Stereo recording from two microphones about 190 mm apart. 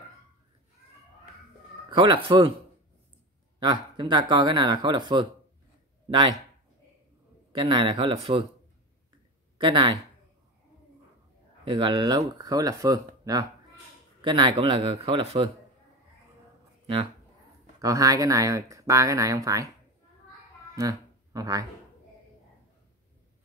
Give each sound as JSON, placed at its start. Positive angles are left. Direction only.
{"t": 2.0, "sound": "speech", "side_deg": -25}
{"t": 3.5, "sound": "speech", "side_deg": -25}
{"t": 7.5, "sound": "speech", "side_deg": -25}
{"t": 9.6, "sound": "speech", "side_deg": -25}
{"t": 11.6, "sound": "speech", "side_deg": -25}
{"t": 16.8, "sound": "speech", "side_deg": -30}
{"t": 17.7, "sound": "speech", "side_deg": -20}
{"t": 20.7, "sound": "speech", "side_deg": -20}